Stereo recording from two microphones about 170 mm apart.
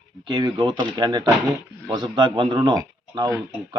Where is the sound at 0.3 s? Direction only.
25° right (ahead or behind).